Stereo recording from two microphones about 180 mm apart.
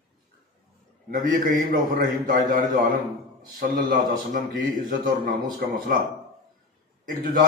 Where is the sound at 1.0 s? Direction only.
50° right (ahead or behind).